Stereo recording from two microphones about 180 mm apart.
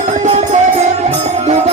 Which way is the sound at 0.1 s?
40° right (ahead or behind).